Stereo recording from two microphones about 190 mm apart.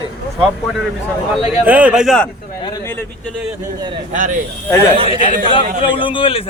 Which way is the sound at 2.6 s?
20° left (ahead or behind).